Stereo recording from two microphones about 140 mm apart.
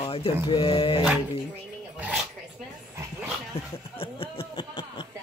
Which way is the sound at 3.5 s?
45° left (ahead or behind).